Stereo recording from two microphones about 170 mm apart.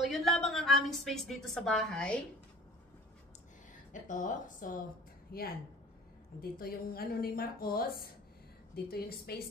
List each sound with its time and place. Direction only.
0.0 s a woman's voice: centre (ahead or behind)
3.9 s a woman's voice: 50° left (ahead or behind)
5.3 s a woman's voice: 65° left (ahead or behind)
6.6 s a woman's voice: 60° left (ahead or behind)